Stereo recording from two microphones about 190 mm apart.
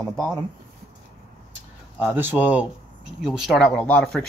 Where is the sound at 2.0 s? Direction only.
10° right (ahead or behind); by 4.2 s 5° left (ahead or behind).